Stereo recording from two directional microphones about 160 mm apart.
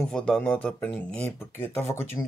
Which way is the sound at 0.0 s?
5° left (ahead or behind).